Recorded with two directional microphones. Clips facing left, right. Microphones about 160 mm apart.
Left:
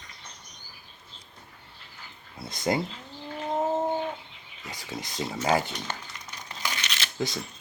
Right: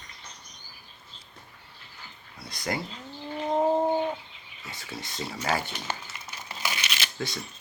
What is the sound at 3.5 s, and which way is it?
Bird, 15° right (ahead or behind).